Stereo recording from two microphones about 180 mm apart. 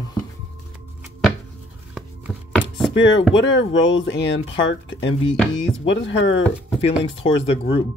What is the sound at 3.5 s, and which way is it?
Speech, 90° left.